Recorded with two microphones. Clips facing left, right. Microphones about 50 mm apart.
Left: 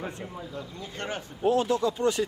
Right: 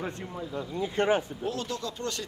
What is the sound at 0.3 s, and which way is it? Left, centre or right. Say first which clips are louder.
Speech: right 3 dB; centre.